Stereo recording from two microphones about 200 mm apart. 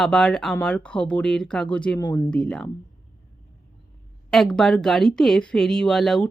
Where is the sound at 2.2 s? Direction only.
5° left (ahead or behind).